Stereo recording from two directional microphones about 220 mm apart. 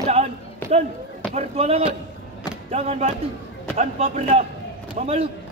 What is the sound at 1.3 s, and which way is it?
A man's voice, 25° right (ahead or behind).